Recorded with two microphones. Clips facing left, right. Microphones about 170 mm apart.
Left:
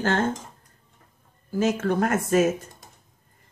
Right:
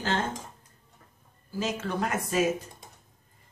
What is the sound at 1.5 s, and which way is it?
Speech, 50° left (ahead or behind).